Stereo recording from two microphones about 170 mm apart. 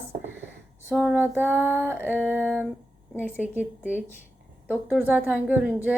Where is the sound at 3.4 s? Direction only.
10° right (ahead or behind).